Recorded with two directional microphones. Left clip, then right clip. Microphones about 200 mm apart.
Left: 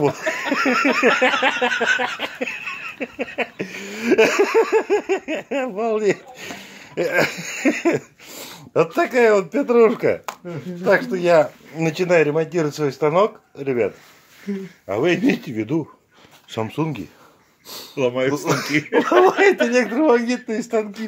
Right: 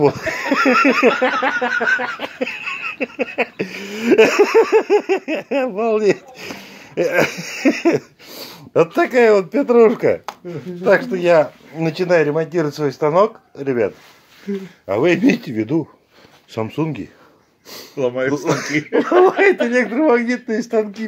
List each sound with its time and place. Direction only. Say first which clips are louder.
0.0 s speech: right 4 dB; 15° right (ahead or behind)
1.1 s a sound: even; 5° right (ahead or behind)
10.4 s speech: right 2 dB; 30° left (ahead or behind)
10.8 s speech: right 3 dB; 20° right (ahead or behind)
14.9 s a sound: right 4 dB; 25° right (ahead or behind)
16.5 s speech: right 2 dB; 5° right (ahead or behind)
17.9 s speech: right 1 dB; 35° left (ahead or behind)
18.3 s speech: right 2 dB; 10° right (ahead or behind)